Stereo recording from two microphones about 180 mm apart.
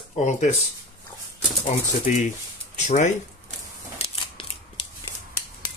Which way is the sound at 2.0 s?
45° left (ahead or behind).